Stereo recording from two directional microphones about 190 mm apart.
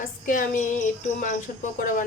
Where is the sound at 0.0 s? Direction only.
45° left (ahead or behind).